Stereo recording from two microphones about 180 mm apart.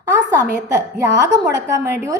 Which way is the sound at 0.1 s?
15° right (ahead or behind).